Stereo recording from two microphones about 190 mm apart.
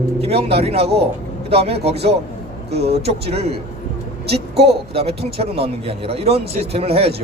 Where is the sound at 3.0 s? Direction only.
30° right (ahead or behind).